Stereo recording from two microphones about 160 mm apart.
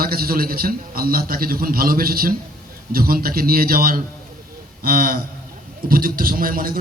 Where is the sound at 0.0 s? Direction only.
65° right (ahead or behind).